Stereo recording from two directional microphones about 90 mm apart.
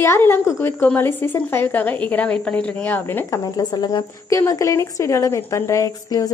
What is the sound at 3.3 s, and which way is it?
Speech, 45° left (ahead or behind).